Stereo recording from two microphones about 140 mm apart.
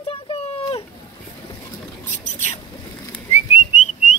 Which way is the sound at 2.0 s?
55° left (ahead or behind).